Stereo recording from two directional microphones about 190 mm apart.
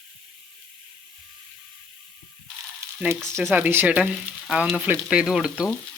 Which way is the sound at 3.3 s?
10° right (ahead or behind).